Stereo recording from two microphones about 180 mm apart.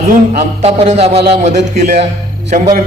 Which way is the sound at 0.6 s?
35° right (ahead or behind).